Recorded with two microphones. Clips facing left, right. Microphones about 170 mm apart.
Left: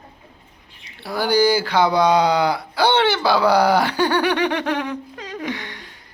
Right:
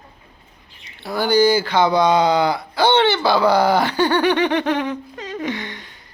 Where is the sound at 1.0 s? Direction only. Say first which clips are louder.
Right 2 dB; 10° left (ahead or behind).